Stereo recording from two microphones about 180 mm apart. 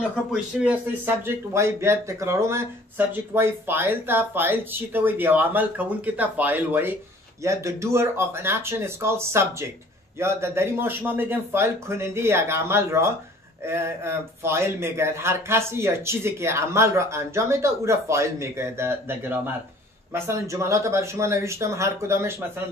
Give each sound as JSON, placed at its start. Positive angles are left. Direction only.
{"t": 0.1, "sound": "speech", "side_deg": -5}